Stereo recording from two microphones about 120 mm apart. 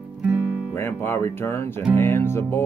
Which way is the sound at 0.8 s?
20° left (ahead or behind).